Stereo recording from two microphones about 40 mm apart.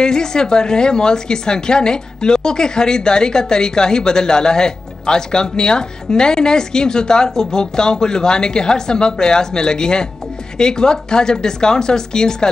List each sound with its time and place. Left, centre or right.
0.0 s a woman's voice: centre